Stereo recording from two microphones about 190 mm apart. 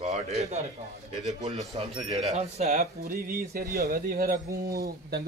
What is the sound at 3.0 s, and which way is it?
A man's voice, 50° right (ahead or behind).